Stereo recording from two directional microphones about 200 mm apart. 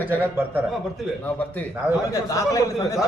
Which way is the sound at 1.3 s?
10° left (ahead or behind).